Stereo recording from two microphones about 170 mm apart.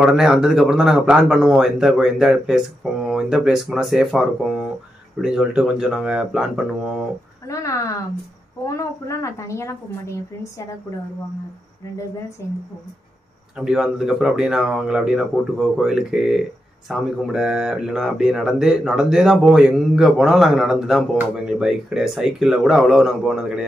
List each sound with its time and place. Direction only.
0.0 s speech: centre (ahead or behind)
7.4 s a woman's voice: 20° left (ahead or behind)
12.4 s a woman's voice: 15° left (ahead or behind)
13.6 s speech: 5° right (ahead or behind)